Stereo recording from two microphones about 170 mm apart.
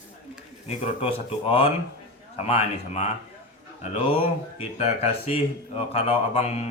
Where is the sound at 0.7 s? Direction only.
35° left (ahead or behind).